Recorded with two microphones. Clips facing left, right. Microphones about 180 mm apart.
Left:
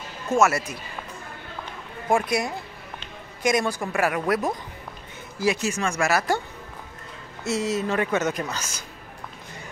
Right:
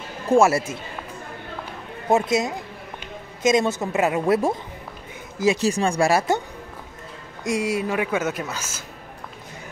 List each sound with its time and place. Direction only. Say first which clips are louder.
0.3 s a woman's voice: right 4 dB; 30° right (ahead or behind)
2.0 s a woman's voice: right 3 dB; 25° right (ahead or behind)
7.4 s a woman's voice: right 2 dB; 10° right (ahead or behind)